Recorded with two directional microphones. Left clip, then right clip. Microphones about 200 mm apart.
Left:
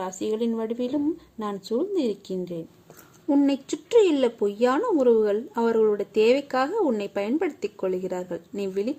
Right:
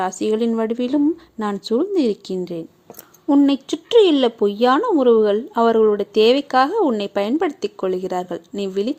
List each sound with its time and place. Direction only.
0.0 s speech: 20° right (ahead or behind)
3.2 s speech: 10° right (ahead or behind)